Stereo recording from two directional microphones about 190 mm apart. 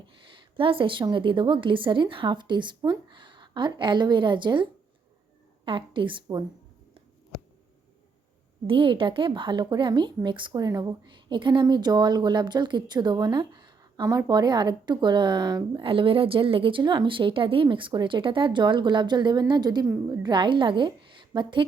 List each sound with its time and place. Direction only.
0.0 s a woman's voice: 25° right (ahead or behind)
8.6 s a woman's voice: 25° right (ahead or behind)